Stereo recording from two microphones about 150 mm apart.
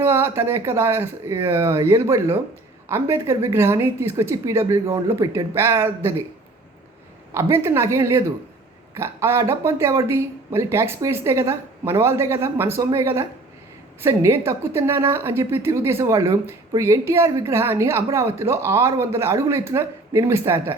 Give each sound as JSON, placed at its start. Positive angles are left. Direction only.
{"t": 0.0, "sound": "a woman's voice", "side_deg": -15}
{"t": 7.3, "sound": "a woman's voice", "side_deg": -20}